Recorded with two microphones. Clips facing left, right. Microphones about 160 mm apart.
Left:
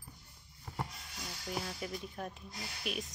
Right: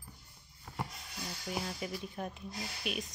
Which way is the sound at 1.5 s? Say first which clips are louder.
Right 1 dB; 5° right (ahead or behind).